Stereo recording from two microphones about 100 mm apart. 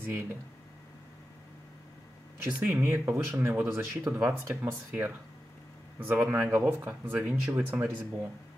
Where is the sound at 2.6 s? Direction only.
25° right (ahead or behind).